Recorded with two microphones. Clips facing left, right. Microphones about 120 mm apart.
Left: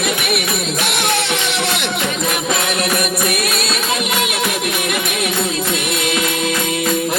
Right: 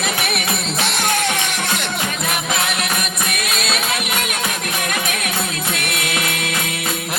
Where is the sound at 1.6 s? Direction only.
20° left (ahead or behind).